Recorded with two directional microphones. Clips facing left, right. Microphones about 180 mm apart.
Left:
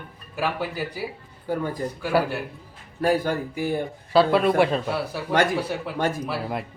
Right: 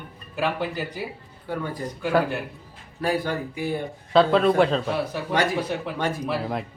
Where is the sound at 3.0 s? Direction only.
45° left (ahead or behind).